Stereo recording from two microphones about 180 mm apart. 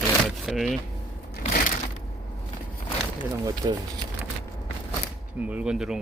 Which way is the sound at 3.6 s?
20° right (ahead or behind).